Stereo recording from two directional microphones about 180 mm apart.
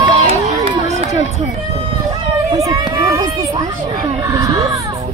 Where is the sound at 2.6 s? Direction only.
20° right (ahead or behind).